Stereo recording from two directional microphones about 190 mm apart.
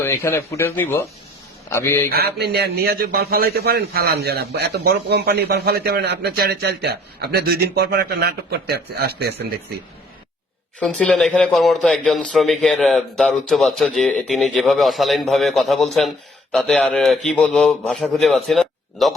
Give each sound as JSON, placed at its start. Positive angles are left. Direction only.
{"t": 0.0, "sound": "a man's voice", "side_deg": 15}
{"t": 2.0, "sound": "a man's voice", "side_deg": -55}
{"t": 10.8, "sound": "a man's voice", "side_deg": 5}